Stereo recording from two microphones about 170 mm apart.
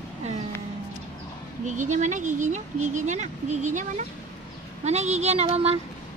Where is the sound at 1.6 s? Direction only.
45° right (ahead or behind).